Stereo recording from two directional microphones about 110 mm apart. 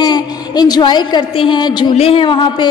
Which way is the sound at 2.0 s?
55° left (ahead or behind).